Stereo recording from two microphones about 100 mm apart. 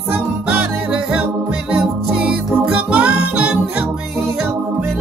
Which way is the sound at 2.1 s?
10° right (ahead or behind).